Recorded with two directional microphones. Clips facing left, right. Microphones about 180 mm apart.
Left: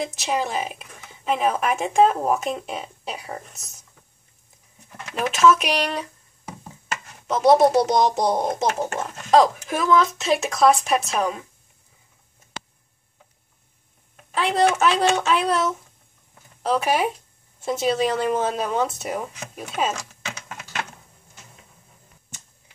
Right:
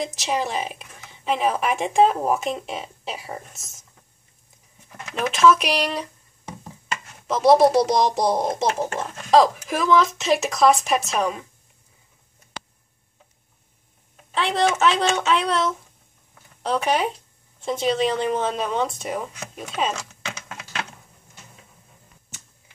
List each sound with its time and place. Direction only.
0.0 s a woman's voice: centre (ahead or behind)
4.9 s a woman's voice: 5° left (ahead or behind)
14.3 s a woman's voice: centre (ahead or behind)